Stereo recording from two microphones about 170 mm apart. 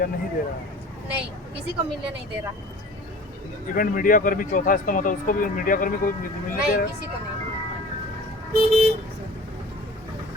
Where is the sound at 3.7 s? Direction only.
55° left (ahead or behind).